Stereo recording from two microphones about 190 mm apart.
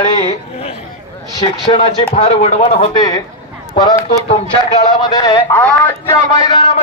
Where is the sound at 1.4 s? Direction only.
25° left (ahead or behind).